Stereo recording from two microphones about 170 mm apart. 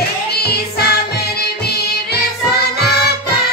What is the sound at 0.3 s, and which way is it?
Music, 70° left (ahead or behind).